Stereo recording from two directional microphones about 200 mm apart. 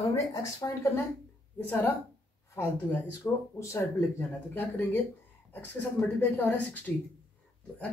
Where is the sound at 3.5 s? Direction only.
15° left (ahead or behind).